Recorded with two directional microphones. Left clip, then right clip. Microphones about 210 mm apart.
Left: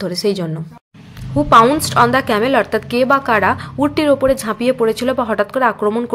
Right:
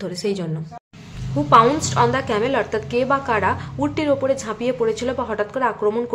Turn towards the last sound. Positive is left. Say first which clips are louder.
# left 5 dB
turn(degrees=25)  # may be behind; listen again after turning